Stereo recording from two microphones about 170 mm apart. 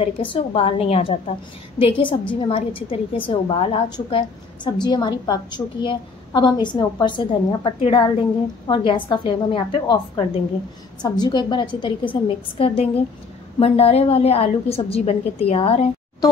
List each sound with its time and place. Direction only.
0.0 s a woman's voice: 30° left (ahead or behind)